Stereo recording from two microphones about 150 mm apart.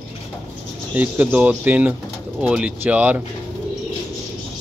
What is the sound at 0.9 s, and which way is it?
Speech, 10° right (ahead or behind).